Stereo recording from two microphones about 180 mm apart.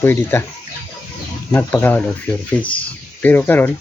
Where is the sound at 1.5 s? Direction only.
10° left (ahead or behind).